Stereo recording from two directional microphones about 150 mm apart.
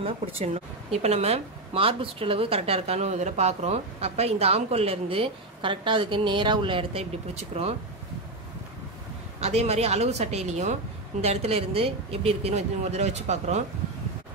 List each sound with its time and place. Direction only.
0.0 s speech: 40° right (ahead or behind)
9.4 s a woman's voice: 45° right (ahead or behind)